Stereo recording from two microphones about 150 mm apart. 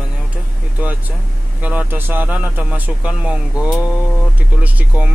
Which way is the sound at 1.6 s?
10° right (ahead or behind).